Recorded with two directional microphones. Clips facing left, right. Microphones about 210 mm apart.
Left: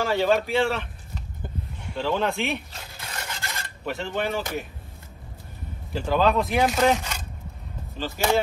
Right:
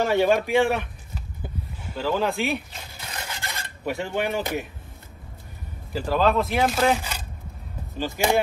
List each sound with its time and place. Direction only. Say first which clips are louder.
0.0 s speech: right 2 dB; 15° right (ahead or behind)
1.1 s a sound: even; 5° right (ahead or behind)
3.3 s rub: even; 15° right (ahead or behind)
5.9 s speech: even; centre (ahead or behind)